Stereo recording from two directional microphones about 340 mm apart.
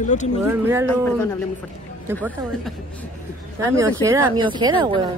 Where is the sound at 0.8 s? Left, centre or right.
Centre.